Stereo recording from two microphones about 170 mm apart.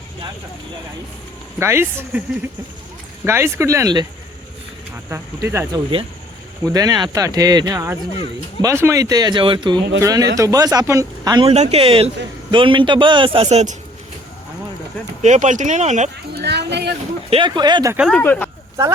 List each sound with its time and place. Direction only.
1.5 s speech: 15° right (ahead or behind)
3.2 s speech: 15° right (ahead or behind)
5.0 s speech: 15° right (ahead or behind)
11.4 s a man's voice: 40° right (ahead or behind)
15.2 s speech: 45° right (ahead or behind)
16.3 s speech: 80° right
17.2 s speech: 30° right (ahead or behind)
17.9 s speech: 5° right (ahead or behind)
18.2 s speech: 10° left (ahead or behind)